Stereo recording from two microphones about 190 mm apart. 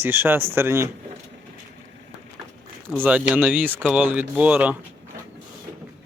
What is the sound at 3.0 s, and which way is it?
Speech, 5° right (ahead or behind).